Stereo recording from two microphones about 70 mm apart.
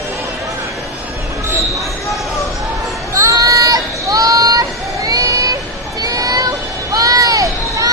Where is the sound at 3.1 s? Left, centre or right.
Right.